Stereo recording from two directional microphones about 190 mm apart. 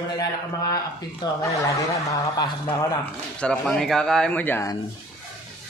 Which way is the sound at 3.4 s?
5° left (ahead or behind).